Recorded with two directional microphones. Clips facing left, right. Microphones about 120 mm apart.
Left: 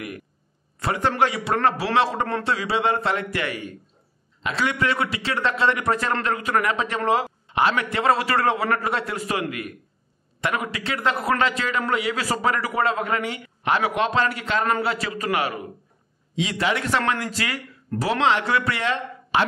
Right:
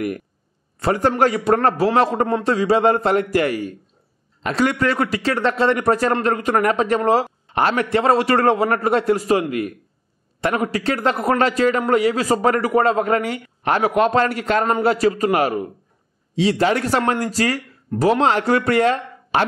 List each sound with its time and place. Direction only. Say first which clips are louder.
0.7 s a man's voice: right 4 dB; 40° right (ahead or behind)